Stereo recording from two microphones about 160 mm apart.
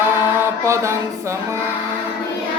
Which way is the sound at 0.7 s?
15° right (ahead or behind).